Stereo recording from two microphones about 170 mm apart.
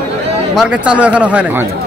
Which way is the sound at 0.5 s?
5° right (ahead or behind).